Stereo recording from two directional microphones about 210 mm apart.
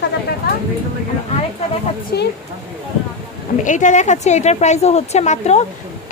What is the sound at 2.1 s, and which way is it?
Speech, 50° left (ahead or behind).